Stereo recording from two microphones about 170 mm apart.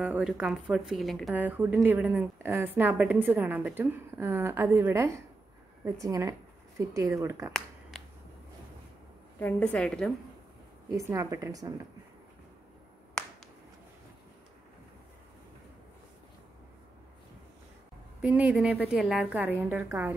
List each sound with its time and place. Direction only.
0.0 s a woman's voice: 5° right (ahead or behind)
9.4 s a woman's voice: 10° left (ahead or behind)
11.0 s a woman's voice: 20° right (ahead or behind)
13.2 s a sound: 5° left (ahead or behind)
18.2 s a woman's voice: 10° right (ahead or behind)